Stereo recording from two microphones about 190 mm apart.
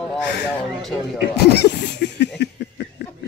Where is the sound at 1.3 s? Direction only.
60° left (ahead or behind).